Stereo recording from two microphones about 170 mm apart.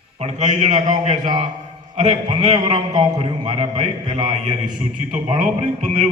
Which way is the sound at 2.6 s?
40° right (ahead or behind).